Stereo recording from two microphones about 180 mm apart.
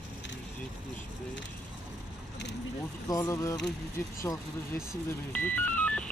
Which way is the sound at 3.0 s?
20° left (ahead or behind).